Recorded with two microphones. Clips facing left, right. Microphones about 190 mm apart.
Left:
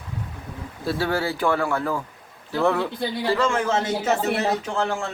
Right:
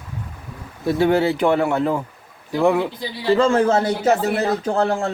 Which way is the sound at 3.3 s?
30° right (ahead or behind).